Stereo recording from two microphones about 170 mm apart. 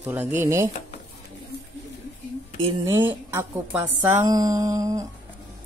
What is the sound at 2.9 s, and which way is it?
A woman's voice, 15° right (ahead or behind).